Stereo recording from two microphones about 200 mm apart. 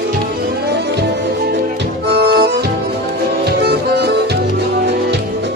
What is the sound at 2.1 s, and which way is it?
Music, 55° right (ahead or behind).